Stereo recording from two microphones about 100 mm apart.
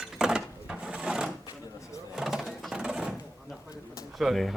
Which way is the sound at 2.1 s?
5° right (ahead or behind).